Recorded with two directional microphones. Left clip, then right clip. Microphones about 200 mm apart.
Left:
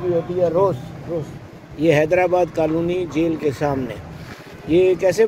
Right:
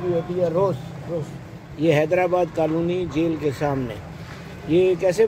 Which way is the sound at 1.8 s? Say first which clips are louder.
Left 3 dB; 5° left (ahead or behind).